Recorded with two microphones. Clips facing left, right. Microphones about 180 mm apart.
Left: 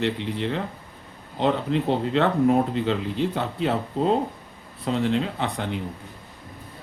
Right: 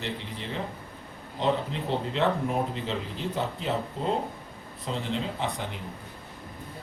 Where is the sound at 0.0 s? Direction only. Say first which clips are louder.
Left 10 dB; 65° left (ahead or behind).